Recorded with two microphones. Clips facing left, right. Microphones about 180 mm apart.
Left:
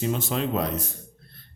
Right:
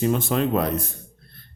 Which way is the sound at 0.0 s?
55° right (ahead or behind).